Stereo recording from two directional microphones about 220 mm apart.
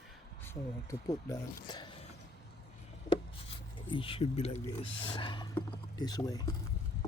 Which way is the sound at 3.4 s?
25° left (ahead or behind).